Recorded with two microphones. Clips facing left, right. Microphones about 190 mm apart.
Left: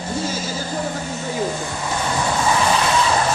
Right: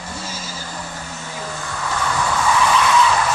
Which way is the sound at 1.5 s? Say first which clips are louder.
Left 2 dB; 20° left (ahead or behind).